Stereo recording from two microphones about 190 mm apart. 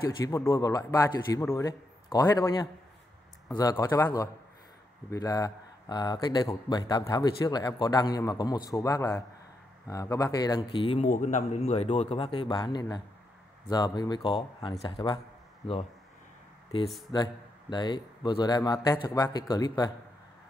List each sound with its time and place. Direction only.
0.2 s a man's voice: 15° left (ahead or behind)
11.1 s speech: 40° left (ahead or behind)
17.1 s speech: 25° left (ahead or behind)